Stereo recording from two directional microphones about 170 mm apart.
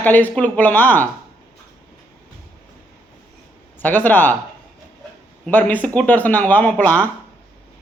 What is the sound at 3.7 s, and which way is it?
Speech, 10° left (ahead or behind).